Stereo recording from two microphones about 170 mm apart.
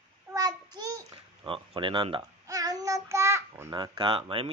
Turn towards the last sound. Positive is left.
turn(degrees=-30)  # may be behind; listen again after turning